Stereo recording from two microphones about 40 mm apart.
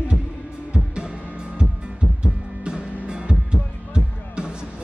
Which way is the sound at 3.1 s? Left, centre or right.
Right.